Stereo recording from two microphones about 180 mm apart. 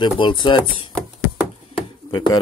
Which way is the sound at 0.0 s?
25° left (ahead or behind).